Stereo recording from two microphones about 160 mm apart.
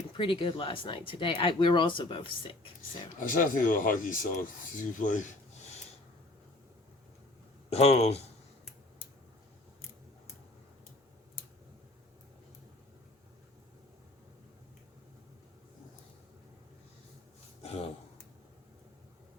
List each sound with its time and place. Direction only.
0.1 s speech: 30° left (ahead or behind)
3.2 s speech: 55° left (ahead or behind)
7.7 s speech: 40° left (ahead or behind)
17.6 s a sound: 40° left (ahead or behind)